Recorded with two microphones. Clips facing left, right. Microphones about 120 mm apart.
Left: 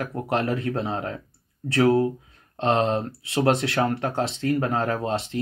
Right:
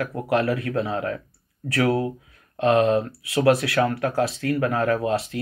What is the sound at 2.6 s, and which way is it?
Speech, 30° left (ahead or behind).